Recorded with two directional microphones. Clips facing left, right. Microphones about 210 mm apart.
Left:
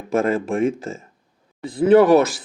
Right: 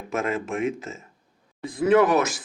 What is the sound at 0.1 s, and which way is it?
Speech, 35° left (ahead or behind).